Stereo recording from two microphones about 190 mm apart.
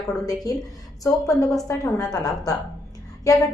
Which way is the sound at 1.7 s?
15° left (ahead or behind).